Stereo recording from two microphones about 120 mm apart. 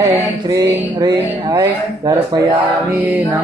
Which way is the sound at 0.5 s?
25° right (ahead or behind).